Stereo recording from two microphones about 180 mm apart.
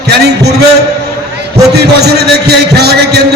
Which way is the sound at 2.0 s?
65° right (ahead or behind).